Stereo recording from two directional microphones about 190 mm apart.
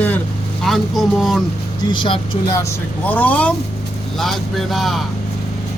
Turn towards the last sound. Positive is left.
turn(degrees=0)  # may be behind; listen again after turning